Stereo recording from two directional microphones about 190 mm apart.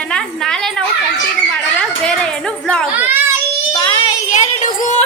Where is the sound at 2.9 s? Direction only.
10° right (ahead or behind).